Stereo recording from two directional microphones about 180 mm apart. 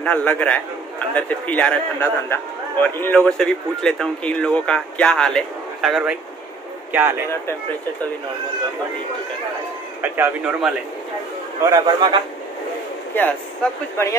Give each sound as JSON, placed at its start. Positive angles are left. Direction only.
{"t": 0.0, "sound": "a man's voice", "side_deg": 10}
{"t": 10.0, "sound": "speech", "side_deg": -10}
{"t": 11.7, "sound": "a man's voice", "side_deg": -25}
{"t": 13.1, "sound": "a man's voice", "side_deg": 10}